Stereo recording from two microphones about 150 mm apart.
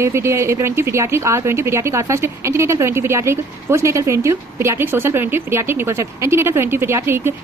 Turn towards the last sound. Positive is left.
turn(degrees=-15)  # may be behind; listen again after turning